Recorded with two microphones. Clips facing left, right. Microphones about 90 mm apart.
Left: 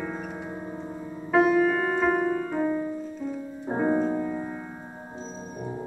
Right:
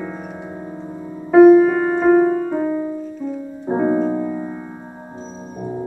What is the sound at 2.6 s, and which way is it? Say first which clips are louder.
Music: right 5 dB; 15° right (ahead or behind).